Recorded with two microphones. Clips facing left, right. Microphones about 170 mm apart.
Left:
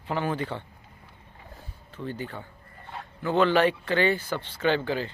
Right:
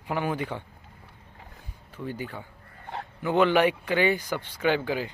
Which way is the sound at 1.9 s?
10° right (ahead or behind).